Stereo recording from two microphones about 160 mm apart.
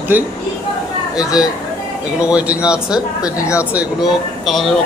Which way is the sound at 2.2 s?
5° right (ahead or behind).